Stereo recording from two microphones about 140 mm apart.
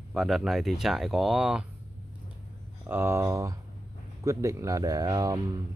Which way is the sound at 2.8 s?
15° right (ahead or behind).